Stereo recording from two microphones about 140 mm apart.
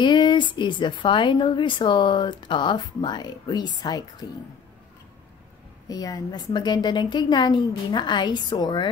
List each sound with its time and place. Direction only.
0.0 s a woman's voice: 35° left (ahead or behind)
5.9 s a woman's voice: 25° left (ahead or behind)